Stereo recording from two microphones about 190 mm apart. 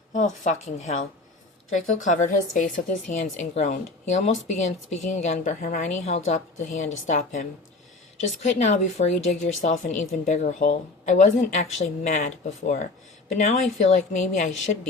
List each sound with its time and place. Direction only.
0.1 s speech: 40° left (ahead or behind)